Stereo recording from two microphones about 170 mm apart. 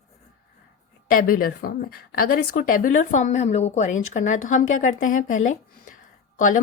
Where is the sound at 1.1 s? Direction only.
55° left (ahead or behind).